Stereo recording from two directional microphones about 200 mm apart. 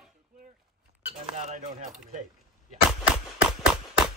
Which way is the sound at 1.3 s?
35° right (ahead or behind).